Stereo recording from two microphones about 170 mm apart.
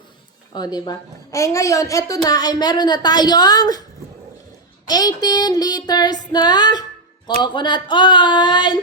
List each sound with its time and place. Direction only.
0.5 s a woman's voice: 25° left (ahead or behind)
4.9 s a woman's voice: 25° left (ahead or behind)